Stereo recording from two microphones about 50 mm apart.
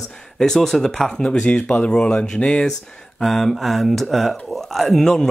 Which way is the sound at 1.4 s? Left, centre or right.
Left.